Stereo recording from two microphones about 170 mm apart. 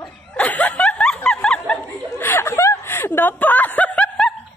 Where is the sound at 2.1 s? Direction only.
15° left (ahead or behind).